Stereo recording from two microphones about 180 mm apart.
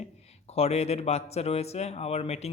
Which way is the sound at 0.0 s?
35° left (ahead or behind).